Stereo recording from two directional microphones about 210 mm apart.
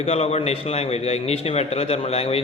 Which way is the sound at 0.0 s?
30° left (ahead or behind).